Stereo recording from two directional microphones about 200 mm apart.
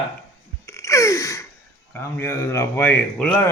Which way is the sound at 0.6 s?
15° left (ahead or behind).